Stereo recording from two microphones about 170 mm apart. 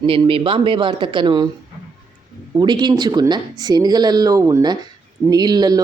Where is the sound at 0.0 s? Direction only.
30° right (ahead or behind).